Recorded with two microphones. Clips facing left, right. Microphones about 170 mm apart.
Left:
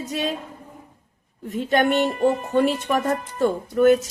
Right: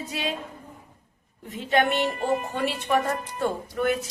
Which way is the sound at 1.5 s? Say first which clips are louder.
Left 4 dB; 40° left (ahead or behind).